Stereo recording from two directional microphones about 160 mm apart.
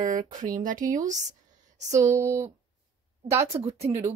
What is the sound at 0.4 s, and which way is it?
Speech, 55° right (ahead or behind).